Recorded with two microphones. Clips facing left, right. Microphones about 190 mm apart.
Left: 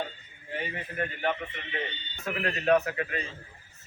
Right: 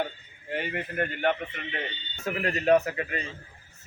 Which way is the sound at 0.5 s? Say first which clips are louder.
Right 4 dB; 65° right (ahead or behind).